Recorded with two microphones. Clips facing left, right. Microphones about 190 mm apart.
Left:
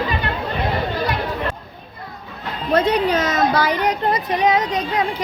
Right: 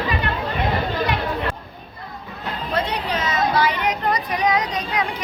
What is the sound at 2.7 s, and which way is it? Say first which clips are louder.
A woman's voice: left 8 dB; 45° left (ahead or behind).